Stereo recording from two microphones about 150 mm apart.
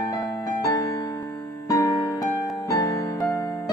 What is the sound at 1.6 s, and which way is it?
Music, 25° left (ahead or behind).